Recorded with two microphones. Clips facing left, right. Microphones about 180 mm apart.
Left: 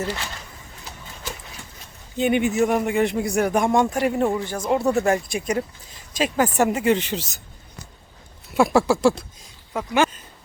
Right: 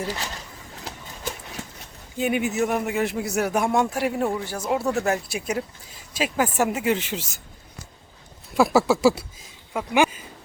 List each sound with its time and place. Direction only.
0.9 s horse: 90° right
2.1 s speech: 5° right (ahead or behind)
8.5 s speech: centre (ahead or behind)